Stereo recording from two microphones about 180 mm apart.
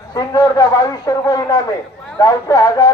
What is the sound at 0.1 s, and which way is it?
Speech, 20° left (ahead or behind).